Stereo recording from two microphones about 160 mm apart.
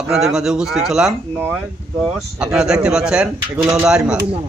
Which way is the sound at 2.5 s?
5° right (ahead or behind).